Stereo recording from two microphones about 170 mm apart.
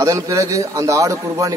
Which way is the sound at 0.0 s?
20° right (ahead or behind).